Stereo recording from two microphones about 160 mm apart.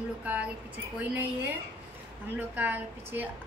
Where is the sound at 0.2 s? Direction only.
10° right (ahead or behind).